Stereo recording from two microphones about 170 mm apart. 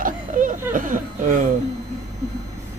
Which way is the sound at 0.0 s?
50° right (ahead or behind).